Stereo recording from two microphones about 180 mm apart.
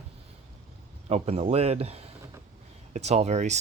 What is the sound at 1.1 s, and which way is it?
Speech, 35° right (ahead or behind).